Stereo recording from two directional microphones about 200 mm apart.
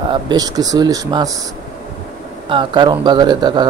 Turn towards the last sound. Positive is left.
turn(degrees=-20)  # may be behind; listen again after turning